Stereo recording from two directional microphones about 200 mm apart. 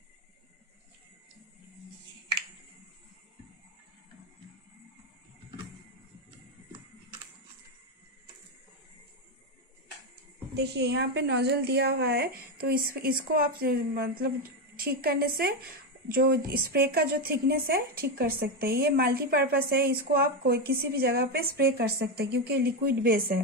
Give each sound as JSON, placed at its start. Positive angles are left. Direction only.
{"t": 10.5, "sound": "a woman's voice", "side_deg": -55}